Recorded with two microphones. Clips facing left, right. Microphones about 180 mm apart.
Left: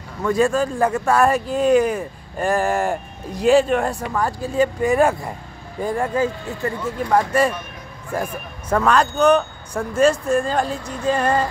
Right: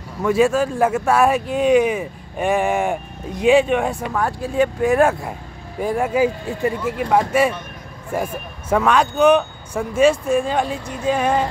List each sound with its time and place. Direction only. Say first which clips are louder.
0.2 s speech: right 2 dB; 5° right (ahead or behind)